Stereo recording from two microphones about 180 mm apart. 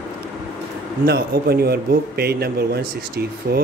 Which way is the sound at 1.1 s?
60° right (ahead or behind).